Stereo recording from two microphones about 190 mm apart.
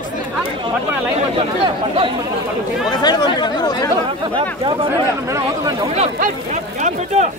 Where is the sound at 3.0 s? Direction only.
20° left (ahead or behind).